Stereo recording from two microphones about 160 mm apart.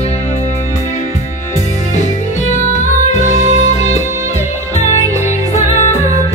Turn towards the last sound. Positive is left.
turn(degrees=45)  # may be behind; listen again after turning